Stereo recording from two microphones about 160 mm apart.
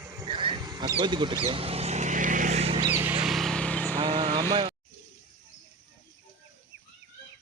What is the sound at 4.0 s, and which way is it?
Vehicle, 25° right (ahead or behind).